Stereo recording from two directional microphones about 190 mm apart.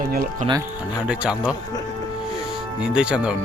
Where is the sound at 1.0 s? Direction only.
5° right (ahead or behind).